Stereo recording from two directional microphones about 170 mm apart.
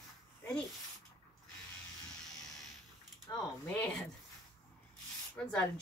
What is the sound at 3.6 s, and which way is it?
Speech, 10° left (ahead or behind).